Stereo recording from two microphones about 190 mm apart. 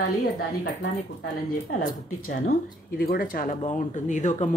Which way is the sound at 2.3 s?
45° left (ahead or behind).